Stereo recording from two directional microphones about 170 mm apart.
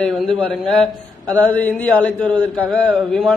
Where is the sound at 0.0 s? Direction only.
5° left (ahead or behind).